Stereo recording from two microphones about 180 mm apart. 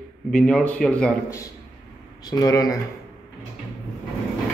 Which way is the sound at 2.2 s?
20° left (ahead or behind).